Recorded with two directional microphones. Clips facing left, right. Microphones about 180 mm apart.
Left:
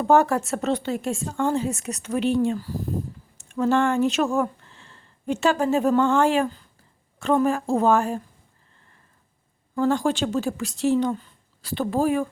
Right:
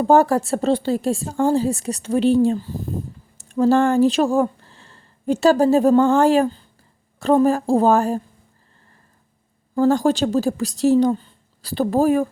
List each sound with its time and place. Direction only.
0.0 s a woman's voice: 35° right (ahead or behind)
3.3 s a woman's voice: 35° right (ahead or behind)
9.7 s a woman's voice: 40° right (ahead or behind)